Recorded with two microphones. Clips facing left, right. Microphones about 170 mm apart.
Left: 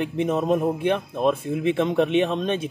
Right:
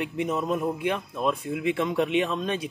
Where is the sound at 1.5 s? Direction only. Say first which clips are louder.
Left 4 dB; 25° left (ahead or behind).